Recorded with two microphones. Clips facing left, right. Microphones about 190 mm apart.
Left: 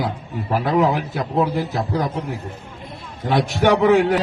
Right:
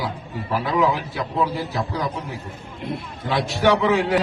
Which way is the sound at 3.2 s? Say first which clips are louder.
Left 2 dB; 50° left (ahead or behind).